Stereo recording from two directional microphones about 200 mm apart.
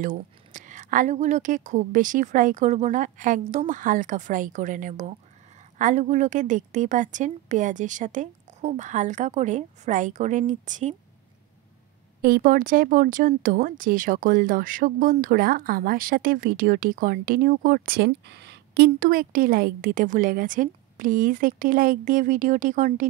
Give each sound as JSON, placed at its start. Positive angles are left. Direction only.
{"t": 0.0, "sound": "a woman's voice", "side_deg": -40}
{"t": 12.2, "sound": "speech", "side_deg": -45}